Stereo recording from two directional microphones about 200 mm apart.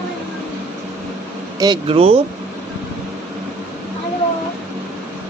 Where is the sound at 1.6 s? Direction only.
25° right (ahead or behind).